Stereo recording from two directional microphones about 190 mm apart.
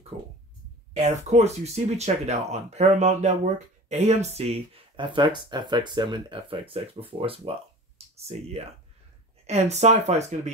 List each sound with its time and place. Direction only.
0.9 s speech: 35° right (ahead or behind)